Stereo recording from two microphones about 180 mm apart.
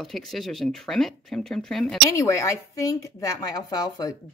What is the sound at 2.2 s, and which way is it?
Speech, 15° left (ahead or behind).